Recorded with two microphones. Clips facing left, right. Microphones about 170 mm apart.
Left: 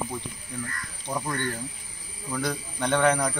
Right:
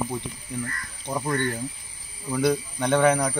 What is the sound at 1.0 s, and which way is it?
A man's voice, 10° right (ahead or behind).